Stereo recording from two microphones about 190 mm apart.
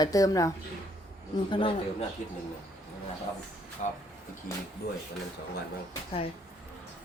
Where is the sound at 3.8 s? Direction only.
40° left (ahead or behind).